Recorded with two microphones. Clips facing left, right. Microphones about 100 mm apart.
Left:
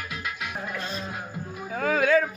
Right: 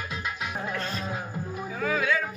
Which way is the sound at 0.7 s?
20° left (ahead or behind).